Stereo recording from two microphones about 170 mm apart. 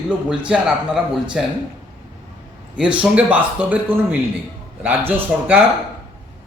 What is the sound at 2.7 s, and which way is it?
Speech, 5° right (ahead or behind).